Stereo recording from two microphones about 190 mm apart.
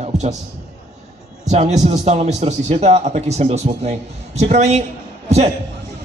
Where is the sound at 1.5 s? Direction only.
35° right (ahead or behind).